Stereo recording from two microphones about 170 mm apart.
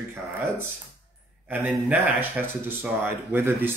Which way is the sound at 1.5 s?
10° right (ahead or behind).